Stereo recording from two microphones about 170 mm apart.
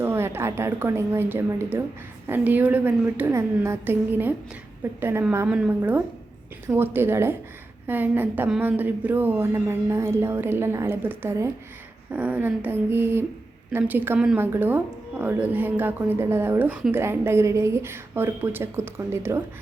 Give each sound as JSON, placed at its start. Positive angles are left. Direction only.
{"t": 0.0, "sound": "a woman's voice", "side_deg": -15}